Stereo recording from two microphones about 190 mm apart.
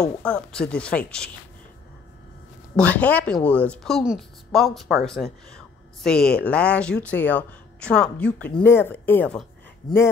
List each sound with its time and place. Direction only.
0.2 s speech: 5° left (ahead or behind)
2.7 s speech: 5° left (ahead or behind)